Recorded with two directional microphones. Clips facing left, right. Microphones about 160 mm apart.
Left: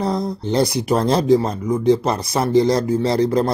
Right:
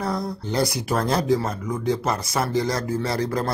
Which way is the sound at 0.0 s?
20° left (ahead or behind).